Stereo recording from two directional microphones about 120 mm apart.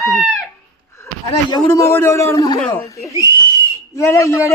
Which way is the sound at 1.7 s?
20° left (ahead or behind).